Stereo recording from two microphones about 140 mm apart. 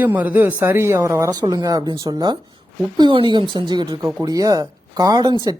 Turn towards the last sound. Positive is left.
turn(degrees=-30)  # may be behind; listen again after turning